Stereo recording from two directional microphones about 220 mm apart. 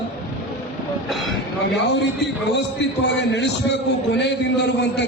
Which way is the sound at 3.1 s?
55° left (ahead or behind).